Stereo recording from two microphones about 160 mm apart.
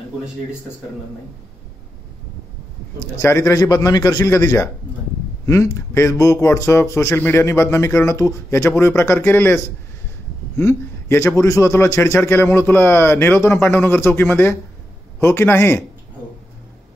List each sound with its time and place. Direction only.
3.2 s a man's voice: 15° left (ahead or behind)
10.6 s speech: 15° left (ahead or behind)